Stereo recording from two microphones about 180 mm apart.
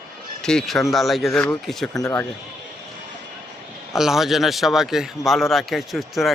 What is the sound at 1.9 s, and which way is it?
Speech, 20° left (ahead or behind).